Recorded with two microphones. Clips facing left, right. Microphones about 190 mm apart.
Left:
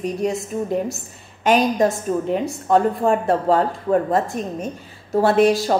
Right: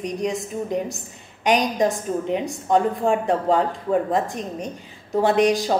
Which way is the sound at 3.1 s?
15° right (ahead or behind).